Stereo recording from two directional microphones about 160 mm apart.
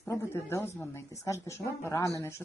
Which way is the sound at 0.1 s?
15° left (ahead or behind).